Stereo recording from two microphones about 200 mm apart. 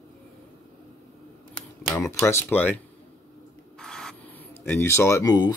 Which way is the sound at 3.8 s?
5° left (ahead or behind).